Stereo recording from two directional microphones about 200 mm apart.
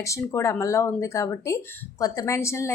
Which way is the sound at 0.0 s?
15° left (ahead or behind).